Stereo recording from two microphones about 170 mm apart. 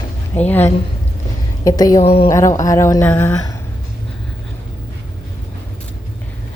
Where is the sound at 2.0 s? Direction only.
35° left (ahead or behind).